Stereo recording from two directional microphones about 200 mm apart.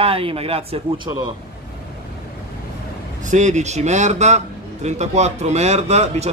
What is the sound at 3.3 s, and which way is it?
Speech, 35° right (ahead or behind).